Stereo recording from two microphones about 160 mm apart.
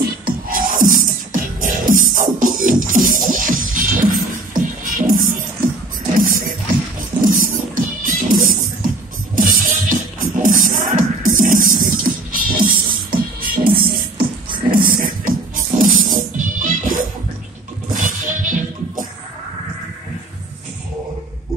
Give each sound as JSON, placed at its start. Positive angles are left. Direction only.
{"t": 0.2, "sound": "music", "side_deg": -60}
{"t": 7.2, "sound": "music", "side_deg": -60}